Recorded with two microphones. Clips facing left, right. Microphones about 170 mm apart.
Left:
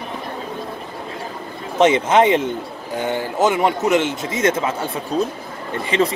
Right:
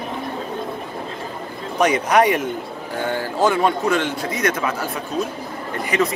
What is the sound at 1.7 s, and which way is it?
Speech, 25° left (ahead or behind).